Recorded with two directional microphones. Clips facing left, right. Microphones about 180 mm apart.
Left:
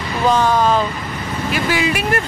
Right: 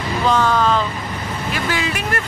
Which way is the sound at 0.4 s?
15° left (ahead or behind).